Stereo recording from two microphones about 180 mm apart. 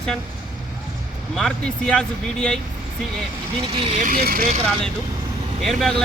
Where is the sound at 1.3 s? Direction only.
5° left (ahead or behind).